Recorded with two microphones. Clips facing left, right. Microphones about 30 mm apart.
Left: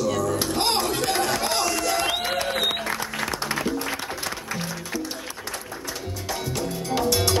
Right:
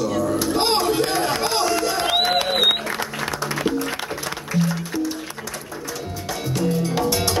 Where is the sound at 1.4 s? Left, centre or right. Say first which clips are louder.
Right 3 dB; right.